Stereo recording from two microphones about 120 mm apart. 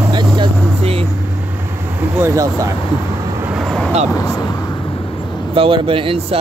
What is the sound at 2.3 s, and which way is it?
Speech, 25° right (ahead or behind).